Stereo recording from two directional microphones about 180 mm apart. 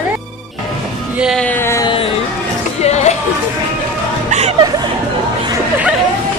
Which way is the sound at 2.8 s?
35° left (ahead or behind).